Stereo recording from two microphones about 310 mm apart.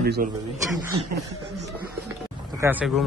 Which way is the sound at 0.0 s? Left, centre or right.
Right.